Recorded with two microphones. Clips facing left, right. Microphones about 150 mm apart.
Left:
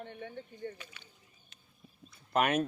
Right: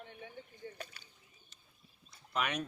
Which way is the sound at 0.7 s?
40° right (ahead or behind).